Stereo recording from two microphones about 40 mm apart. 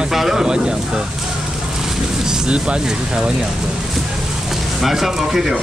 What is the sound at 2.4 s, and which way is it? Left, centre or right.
Speech, right.